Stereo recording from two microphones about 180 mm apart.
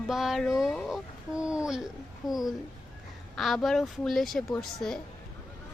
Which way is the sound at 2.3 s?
Centre (ahead or behind).